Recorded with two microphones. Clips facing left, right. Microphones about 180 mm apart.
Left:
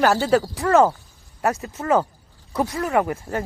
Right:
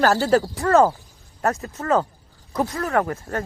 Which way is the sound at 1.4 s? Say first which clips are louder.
Even; 15° left (ahead or behind).